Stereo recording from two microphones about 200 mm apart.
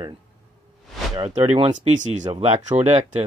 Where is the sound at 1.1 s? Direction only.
25° right (ahead or behind).